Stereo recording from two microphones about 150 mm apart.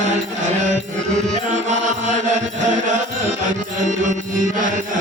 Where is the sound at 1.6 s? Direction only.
50° right (ahead or behind).